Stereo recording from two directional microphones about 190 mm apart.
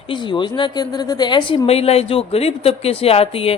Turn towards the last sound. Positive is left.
turn(degrees=30)  # may be behind; listen again after turning